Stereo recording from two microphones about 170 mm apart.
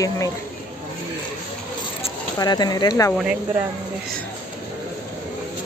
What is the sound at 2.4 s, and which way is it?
Speech, 25° left (ahead or behind).